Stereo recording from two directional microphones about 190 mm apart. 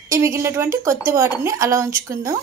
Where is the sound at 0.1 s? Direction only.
15° right (ahead or behind).